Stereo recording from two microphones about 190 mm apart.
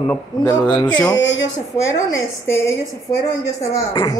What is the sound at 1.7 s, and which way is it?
A woman's voice, 15° left (ahead or behind).